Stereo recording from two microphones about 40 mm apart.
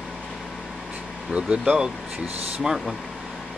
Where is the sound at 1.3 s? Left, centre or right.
Right.